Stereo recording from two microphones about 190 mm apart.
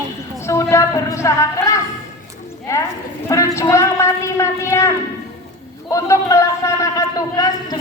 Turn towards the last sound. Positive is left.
turn(degrees=20)  # may be behind; listen again after turning